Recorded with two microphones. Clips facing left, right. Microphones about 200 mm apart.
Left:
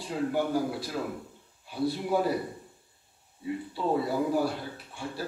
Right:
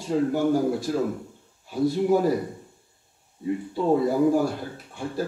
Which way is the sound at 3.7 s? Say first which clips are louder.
Right 6 dB; 45° right (ahead or behind).